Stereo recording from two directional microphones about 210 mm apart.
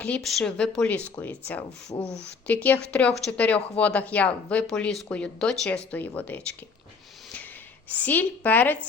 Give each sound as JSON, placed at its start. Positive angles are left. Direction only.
{"t": 0.0, "sound": "a woman's voice", "side_deg": 5}
{"t": 1.9, "sound": "speech", "side_deg": 20}
{"t": 2.5, "sound": "a woman's voice", "side_deg": 5}
{"t": 7.9, "sound": "a woman's voice", "side_deg": 10}